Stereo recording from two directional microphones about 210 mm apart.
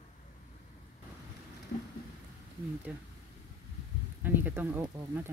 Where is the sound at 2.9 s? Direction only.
5° right (ahead or behind).